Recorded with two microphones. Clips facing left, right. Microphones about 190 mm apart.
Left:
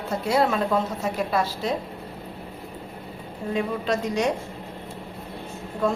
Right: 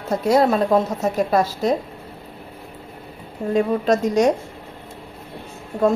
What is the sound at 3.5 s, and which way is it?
Speech, 45° right (ahead or behind).